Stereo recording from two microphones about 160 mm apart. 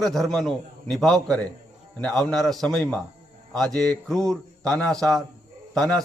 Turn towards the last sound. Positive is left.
turn(degrees=5)  # may be behind; listen again after turning